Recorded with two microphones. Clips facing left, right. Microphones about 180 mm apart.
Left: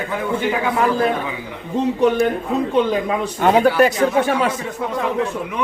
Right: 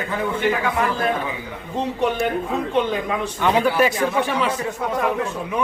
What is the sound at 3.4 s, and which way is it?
A man's voice, 45° left (ahead or behind).